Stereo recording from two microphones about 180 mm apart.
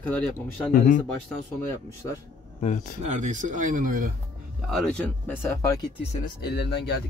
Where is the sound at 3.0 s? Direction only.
40° right (ahead or behind).